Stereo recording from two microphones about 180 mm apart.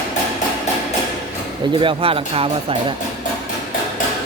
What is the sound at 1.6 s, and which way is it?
Speech, 25° right (ahead or behind).